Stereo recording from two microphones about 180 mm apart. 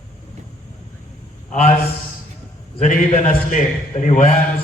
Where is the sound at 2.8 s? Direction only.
45° left (ahead or behind).